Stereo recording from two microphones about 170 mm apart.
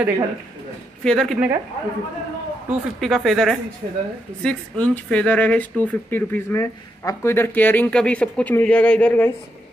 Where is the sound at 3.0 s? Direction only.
Centre (ahead or behind).